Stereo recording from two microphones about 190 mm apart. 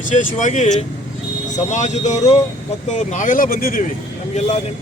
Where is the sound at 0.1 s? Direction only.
40° left (ahead or behind).